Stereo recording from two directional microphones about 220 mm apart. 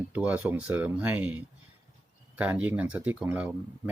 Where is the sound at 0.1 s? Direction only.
5° right (ahead or behind).